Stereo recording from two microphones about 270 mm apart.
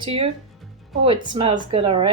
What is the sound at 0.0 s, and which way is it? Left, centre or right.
Speech, right.